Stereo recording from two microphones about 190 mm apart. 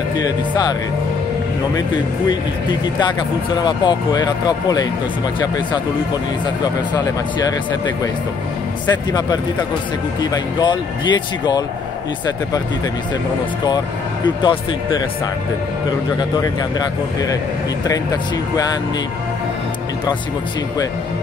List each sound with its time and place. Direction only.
0.2 s speech: 20° left (ahead or behind)
2.2 s speech: 25° left (ahead or behind)
6.6 s speech: 20° left (ahead or behind)
9.1 s speech: 20° left (ahead or behind)
14.2 s speech: 25° left (ahead or behind)
17.8 s speech: 20° left (ahead or behind)